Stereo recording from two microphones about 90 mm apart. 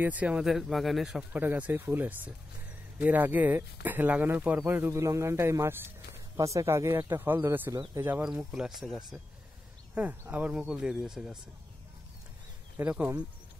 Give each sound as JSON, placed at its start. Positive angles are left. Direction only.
{"t": 0.0, "sound": "speech", "side_deg": -15}
{"t": 0.5, "sound": "speech", "side_deg": -5}
{"t": 1.3, "sound": "speech", "side_deg": -20}
{"t": 4.9, "sound": "speech", "side_deg": -35}
{"t": 8.3, "sound": "speech", "side_deg": -5}
{"t": 9.9, "sound": "speech", "side_deg": -15}
{"t": 12.8, "sound": "speech", "side_deg": -20}